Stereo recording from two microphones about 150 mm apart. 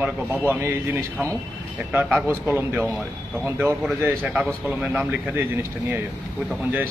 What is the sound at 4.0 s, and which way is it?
Speech, 10° right (ahead or behind).